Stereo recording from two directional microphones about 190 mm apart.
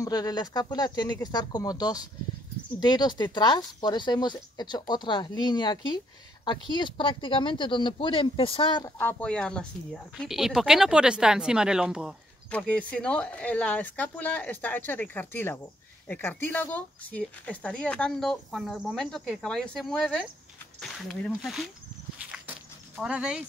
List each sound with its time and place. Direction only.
0.0 s speech: 20° left (ahead or behind)
8.9 s speech: 10° left (ahead or behind)
22.3 s a sound: 5° right (ahead or behind)